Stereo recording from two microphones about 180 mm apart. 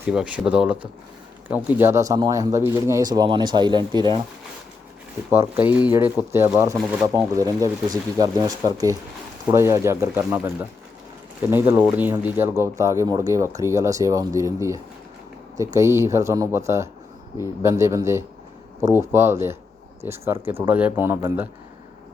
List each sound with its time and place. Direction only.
0.0 s speech: 5° right (ahead or behind); by 4.3 s 25° right (ahead or behind)
5.3 s speech: 10° right (ahead or behind)